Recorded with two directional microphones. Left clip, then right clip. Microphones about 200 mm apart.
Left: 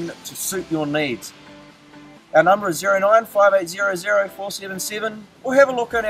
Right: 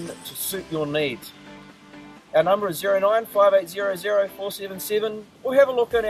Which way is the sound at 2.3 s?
5° right (ahead or behind).